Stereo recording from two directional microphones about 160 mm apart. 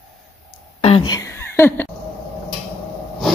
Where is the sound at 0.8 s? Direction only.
35° left (ahead or behind).